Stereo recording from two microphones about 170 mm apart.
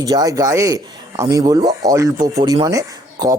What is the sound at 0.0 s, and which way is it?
Speech, 20° right (ahead or behind).